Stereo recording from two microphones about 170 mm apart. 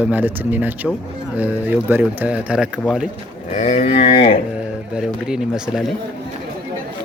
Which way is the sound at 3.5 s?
45° left (ahead or behind).